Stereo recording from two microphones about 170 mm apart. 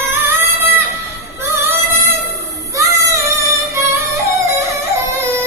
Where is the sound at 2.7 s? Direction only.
20° right (ahead or behind).